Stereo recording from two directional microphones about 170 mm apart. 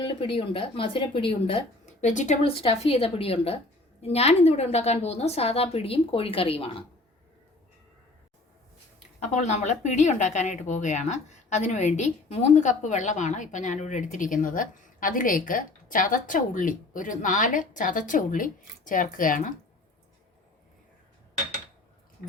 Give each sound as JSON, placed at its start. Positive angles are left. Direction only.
{"t": 0.0, "sound": "speech", "side_deg": 30}
{"t": 9.2, "sound": "speech", "side_deg": 40}